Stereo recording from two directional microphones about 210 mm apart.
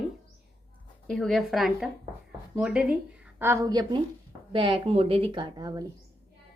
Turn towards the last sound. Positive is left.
turn(degrees=-20)  # may be behind; listen again after turning